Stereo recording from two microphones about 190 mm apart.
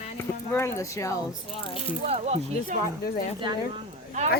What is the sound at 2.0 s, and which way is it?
Speech, 35° right (ahead or behind).